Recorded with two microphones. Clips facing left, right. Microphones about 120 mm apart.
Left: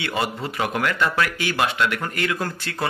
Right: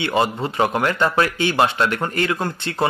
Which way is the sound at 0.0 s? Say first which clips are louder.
Right 6 dB; 25° right (ahead or behind).